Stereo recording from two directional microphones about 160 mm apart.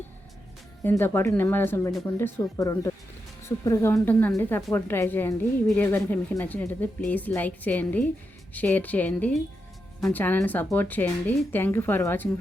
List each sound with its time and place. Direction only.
0.9 s a woman's voice: 15° left (ahead or behind)